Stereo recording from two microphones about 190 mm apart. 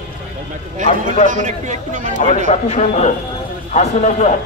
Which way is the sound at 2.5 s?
35° left (ahead or behind).